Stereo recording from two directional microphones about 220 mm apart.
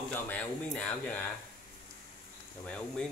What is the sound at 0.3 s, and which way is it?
Speech, 5° left (ahead or behind).